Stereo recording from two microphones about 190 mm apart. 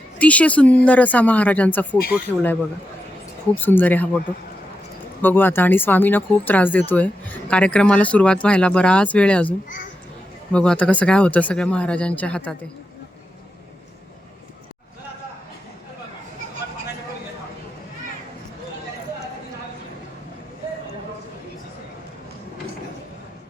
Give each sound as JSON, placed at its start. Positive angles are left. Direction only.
{"t": 0.2, "sound": "speech", "side_deg": 5}
{"t": 3.5, "sound": "speech", "side_deg": 10}
{"t": 5.2, "sound": "speech", "side_deg": 10}